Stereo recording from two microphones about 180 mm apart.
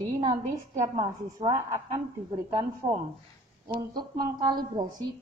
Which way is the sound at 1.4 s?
15° right (ahead or behind).